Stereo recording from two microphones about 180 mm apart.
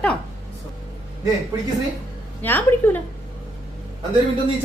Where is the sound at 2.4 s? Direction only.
10° left (ahead or behind).